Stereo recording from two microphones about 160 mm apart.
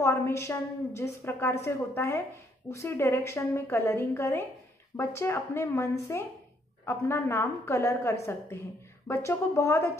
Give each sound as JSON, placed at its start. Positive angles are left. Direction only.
{"t": 0.0, "sound": "a woman's voice", "side_deg": 15}